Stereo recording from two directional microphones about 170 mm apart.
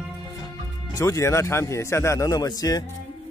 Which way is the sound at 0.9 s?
15° left (ahead or behind).